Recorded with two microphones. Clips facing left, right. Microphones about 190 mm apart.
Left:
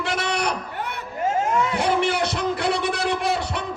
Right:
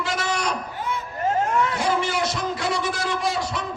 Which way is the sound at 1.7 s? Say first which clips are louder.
Left 2 dB; 60° left (ahead or behind).